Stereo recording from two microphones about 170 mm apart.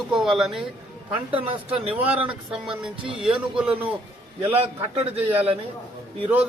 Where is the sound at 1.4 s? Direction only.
30° right (ahead or behind).